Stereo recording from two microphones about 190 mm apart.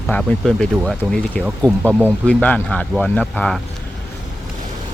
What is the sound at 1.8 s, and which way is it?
Speech, 10° right (ahead or behind).